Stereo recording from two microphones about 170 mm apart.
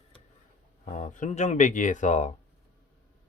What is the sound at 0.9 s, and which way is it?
Speech, 45° left (ahead or behind).